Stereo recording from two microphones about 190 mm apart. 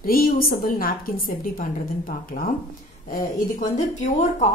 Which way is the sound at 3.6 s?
40° left (ahead or behind).